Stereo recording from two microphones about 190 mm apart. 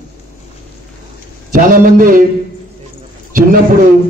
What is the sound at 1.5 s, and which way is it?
Speech, 45° right (ahead or behind).